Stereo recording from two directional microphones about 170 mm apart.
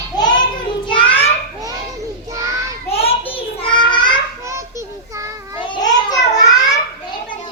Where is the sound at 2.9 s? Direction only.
35° left (ahead or behind).